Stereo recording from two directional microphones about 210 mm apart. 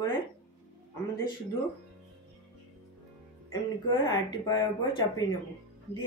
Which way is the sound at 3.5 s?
15° left (ahead or behind).